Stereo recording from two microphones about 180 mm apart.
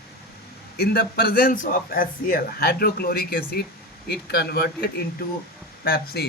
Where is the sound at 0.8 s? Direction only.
60° left (ahead or behind).